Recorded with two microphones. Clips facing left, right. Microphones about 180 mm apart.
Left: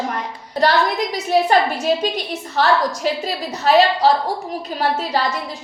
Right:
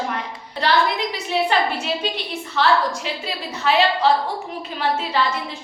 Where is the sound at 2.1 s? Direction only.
40° left (ahead or behind).